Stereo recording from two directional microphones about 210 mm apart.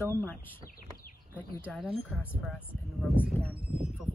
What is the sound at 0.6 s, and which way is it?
Bird, 40° left (ahead or behind).